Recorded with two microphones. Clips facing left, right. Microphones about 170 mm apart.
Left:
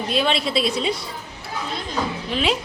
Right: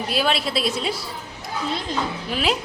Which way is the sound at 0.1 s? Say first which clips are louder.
Left 2 dB; 5° right (ahead or behind).